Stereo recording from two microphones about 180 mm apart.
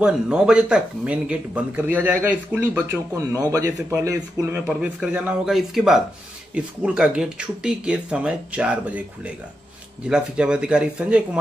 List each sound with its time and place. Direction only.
0.0 s speech: 5° right (ahead or behind)